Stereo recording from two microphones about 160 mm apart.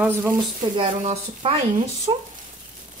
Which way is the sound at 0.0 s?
10° right (ahead or behind).